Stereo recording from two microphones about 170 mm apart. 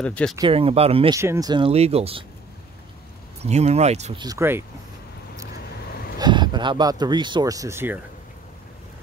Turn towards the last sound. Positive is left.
turn(degrees=-15)  # may be behind; listen again after turning